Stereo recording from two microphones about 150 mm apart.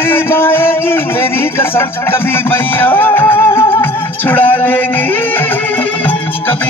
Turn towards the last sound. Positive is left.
turn(degrees=15)  # may be behind; listen again after turning